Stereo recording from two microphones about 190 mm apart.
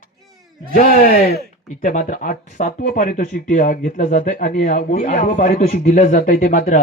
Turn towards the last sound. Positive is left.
turn(degrees=40)  # may be behind; listen again after turning